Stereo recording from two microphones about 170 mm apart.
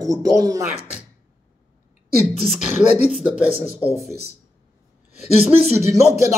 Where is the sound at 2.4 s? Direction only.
Centre (ahead or behind).